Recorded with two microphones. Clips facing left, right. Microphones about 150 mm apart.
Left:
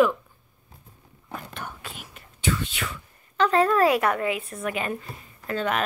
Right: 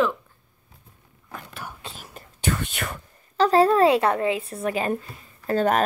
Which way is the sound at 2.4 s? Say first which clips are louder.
Right 1 dB; 55° right (ahead or behind).